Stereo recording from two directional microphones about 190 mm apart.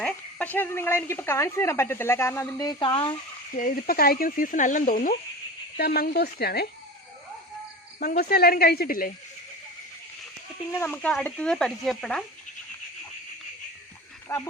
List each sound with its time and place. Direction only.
0.0 s speech: 5° left (ahead or behind); by 3.2 s 25° left (ahead or behind)
3.5 s speech: 45° left (ahead or behind)
7.9 s speech: 55° left (ahead or behind)
10.7 s speech: 10° left (ahead or behind)
14.3 s speech: 15° left (ahead or behind)